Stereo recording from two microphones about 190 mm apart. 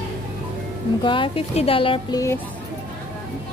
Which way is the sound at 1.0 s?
25° left (ahead or behind).